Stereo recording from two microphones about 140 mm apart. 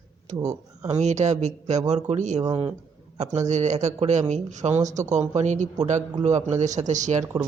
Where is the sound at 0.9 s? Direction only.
55° right (ahead or behind).